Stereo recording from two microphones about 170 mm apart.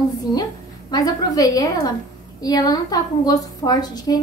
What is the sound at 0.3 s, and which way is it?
A woman's voice, 20° left (ahead or behind).